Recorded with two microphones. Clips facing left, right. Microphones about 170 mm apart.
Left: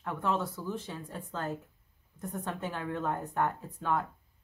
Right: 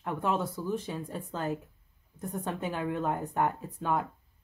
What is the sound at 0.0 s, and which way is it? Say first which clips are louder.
Speech: right 2 dB; 15° right (ahead or behind).